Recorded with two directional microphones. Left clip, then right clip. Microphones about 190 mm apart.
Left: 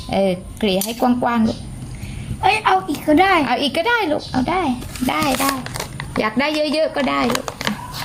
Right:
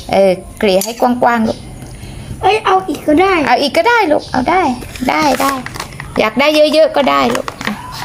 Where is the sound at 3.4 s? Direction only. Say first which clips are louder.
Right 8 dB; 20° right (ahead or behind).